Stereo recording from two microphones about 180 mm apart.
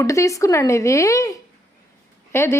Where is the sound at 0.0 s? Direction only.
15° left (ahead or behind).